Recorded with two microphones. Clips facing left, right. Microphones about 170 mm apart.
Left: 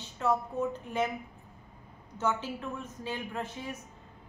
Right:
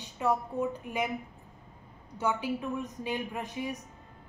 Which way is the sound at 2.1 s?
15° right (ahead or behind).